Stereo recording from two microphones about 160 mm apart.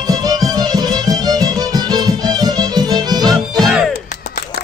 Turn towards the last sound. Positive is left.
turn(degrees=0)  # may be behind; listen again after turning